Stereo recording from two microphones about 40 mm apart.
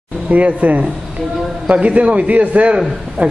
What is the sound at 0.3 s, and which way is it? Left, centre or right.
Speech, right.